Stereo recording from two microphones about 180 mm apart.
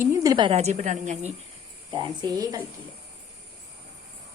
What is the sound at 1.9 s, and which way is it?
Speech, 25° right (ahead or behind).